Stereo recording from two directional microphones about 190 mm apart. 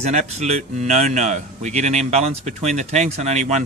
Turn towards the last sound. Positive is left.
turn(degrees=-40)  # may be behind; listen again after turning